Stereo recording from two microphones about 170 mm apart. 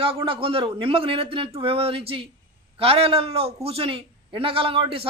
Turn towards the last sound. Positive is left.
turn(degrees=-35)  # may be behind; listen again after turning